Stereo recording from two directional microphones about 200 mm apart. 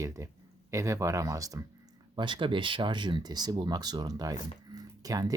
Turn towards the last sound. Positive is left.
turn(degrees=-20)  # may be behind; listen again after turning